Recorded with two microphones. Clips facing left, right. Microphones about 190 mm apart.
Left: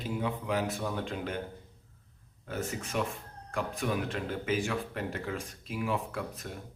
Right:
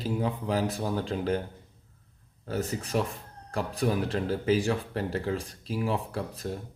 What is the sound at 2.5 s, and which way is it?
Speech, 35° right (ahead or behind).